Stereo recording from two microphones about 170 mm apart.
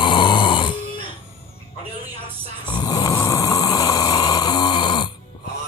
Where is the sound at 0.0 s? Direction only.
30° left (ahead or behind).